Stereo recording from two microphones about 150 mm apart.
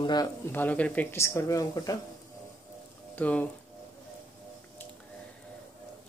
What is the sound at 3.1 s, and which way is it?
Speech, 10° left (ahead or behind).